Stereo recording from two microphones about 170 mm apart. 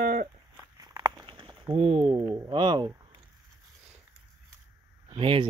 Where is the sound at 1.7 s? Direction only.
35° right (ahead or behind).